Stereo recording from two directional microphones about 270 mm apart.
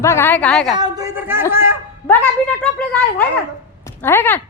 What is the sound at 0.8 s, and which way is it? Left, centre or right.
Speech, centre.